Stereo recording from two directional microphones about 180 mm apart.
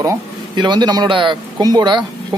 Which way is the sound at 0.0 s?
20° right (ahead or behind).